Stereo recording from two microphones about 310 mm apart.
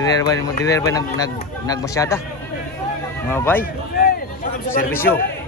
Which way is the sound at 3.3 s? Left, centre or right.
Centre.